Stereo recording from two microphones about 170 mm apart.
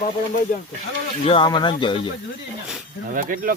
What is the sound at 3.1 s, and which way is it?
Speech, 55° right (ahead or behind).